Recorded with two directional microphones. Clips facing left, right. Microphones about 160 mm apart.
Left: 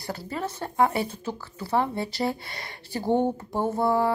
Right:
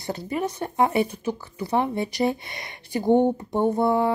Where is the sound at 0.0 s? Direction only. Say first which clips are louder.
Right 4 dB; 20° right (ahead or behind).